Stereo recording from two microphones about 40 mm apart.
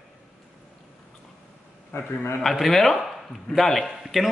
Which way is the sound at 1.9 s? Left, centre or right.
Left.